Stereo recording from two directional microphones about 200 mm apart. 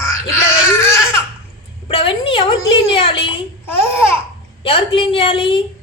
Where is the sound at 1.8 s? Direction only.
25° left (ahead or behind).